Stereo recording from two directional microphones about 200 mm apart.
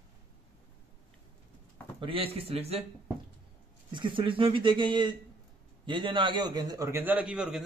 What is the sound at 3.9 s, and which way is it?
A man's voice, 25° right (ahead or behind).